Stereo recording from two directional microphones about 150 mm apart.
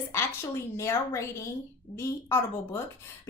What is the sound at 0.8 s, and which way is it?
A woman's voice, 20° left (ahead or behind).